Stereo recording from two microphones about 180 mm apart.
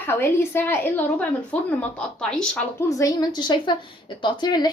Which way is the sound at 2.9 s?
20° left (ahead or behind).